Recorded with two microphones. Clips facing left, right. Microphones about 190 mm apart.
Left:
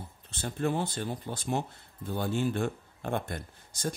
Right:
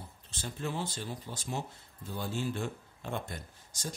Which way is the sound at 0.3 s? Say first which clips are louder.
Left 7 dB; 55° left (ahead or behind).